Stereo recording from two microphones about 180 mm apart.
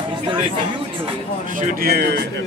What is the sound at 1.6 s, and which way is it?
Speech, 55° right (ahead or behind).